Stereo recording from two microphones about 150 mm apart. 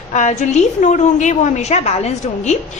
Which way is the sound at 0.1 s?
50° left (ahead or behind).